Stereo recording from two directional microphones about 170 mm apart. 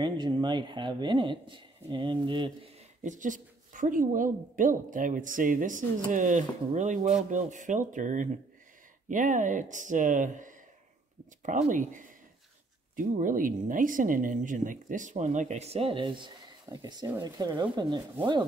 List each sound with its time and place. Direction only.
0.0 s speech: 25° right (ahead or behind)
3.0 s speech: 45° right (ahead or behind); by 18.0 s 25° right (ahead or behind)